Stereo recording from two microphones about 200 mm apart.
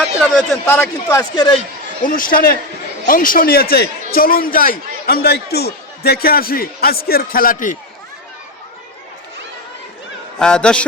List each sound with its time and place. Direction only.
0.6 s a man's voice: 15° left (ahead or behind)
2.0 s a man's voice: 45° left (ahead or behind)
10.3 s a man's voice: 5° left (ahead or behind)